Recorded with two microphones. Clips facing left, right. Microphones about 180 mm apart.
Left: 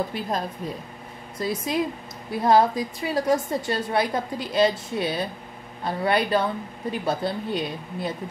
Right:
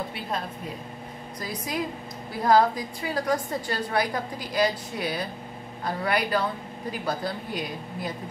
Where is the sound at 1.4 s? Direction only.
25° left (ahead or behind).